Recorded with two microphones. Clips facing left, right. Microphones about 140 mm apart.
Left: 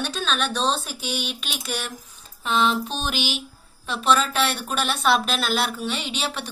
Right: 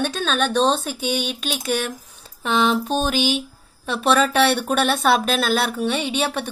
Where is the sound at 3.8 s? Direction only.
60° right (ahead or behind).